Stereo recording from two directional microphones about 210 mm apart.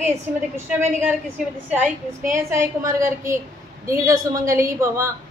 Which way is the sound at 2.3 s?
15° right (ahead or behind).